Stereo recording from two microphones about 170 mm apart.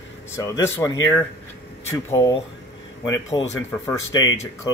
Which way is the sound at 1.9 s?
20° left (ahead or behind).